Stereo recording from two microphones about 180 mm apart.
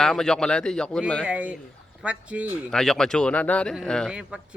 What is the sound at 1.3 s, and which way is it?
Speech, 10° right (ahead or behind).